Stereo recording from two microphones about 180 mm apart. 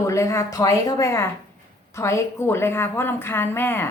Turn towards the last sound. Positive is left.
turn(degrees=10)  # may be behind; listen again after turning